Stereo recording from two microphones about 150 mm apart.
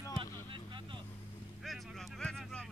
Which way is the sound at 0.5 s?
35° right (ahead or behind).